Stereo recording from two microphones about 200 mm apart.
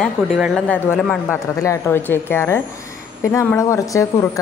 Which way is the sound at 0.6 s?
10° left (ahead or behind).